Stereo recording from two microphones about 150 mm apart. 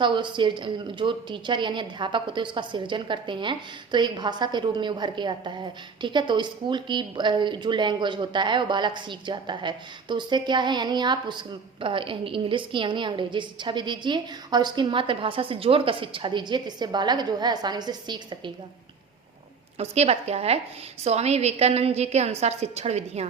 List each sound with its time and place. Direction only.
0.0 s a woman's voice: 30° right (ahead or behind)
19.8 s a woman's voice: 45° right (ahead or behind)